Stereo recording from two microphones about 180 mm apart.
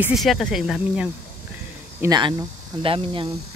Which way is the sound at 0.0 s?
Centre (ahead or behind).